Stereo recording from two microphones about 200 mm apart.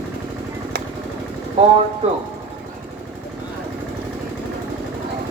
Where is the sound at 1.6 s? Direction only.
30° right (ahead or behind).